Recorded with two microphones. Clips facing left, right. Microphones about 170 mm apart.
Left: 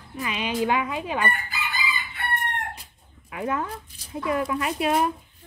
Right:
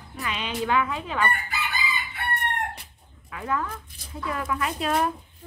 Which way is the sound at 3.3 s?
20° left (ahead or behind).